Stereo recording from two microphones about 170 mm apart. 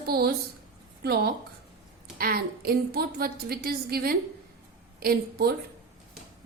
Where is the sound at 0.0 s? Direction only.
65° right (ahead or behind).